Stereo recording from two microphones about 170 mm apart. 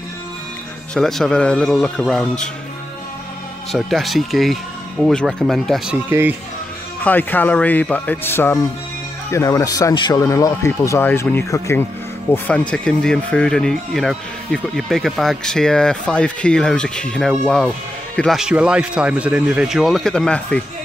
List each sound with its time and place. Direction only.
0.9 s speech: centre (ahead or behind)
3.7 s speech: centre (ahead or behind)
6.0 s speech: 10° right (ahead or behind)
7.0 s a man's voice: 10° left (ahead or behind)